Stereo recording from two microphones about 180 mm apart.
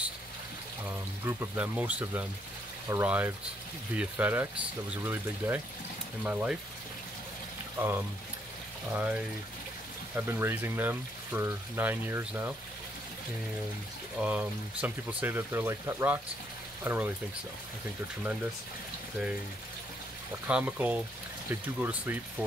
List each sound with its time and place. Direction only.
0.8 s speech: 10° right (ahead or behind)
7.8 s speech: 10° right (ahead or behind)
14.1 s speech: 5° right (ahead or behind)
20.4 s speech: 5° right (ahead or behind)